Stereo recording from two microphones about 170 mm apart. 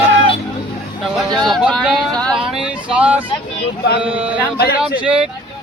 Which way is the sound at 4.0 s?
10° right (ahead or behind).